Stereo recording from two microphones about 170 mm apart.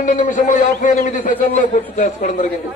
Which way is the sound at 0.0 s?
45° left (ahead or behind).